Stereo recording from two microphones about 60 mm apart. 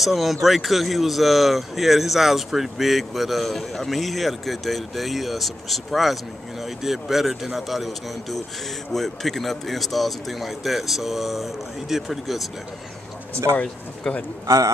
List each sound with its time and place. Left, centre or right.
0.0 s speech: centre
13.5 s speech: right
14.0 s a man's voice: centre
14.4 s a man's voice: right